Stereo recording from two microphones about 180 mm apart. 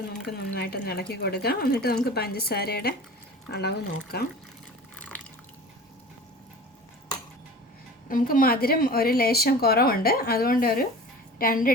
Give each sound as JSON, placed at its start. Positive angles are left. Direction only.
{"t": 0.1, "sound": "speech", "side_deg": 60}
{"t": 8.1, "sound": "speech", "side_deg": 50}